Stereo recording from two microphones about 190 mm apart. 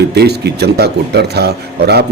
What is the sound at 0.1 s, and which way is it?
Speech, 60° right (ahead or behind).